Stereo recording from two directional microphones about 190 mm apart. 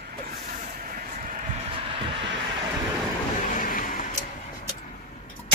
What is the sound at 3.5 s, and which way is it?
Vehicle, 45° left (ahead or behind).